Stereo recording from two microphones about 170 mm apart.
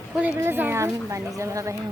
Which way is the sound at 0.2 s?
10° right (ahead or behind).